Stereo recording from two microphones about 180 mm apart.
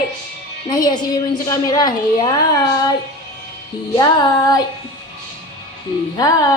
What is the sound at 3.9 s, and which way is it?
Speech, 20° left (ahead or behind).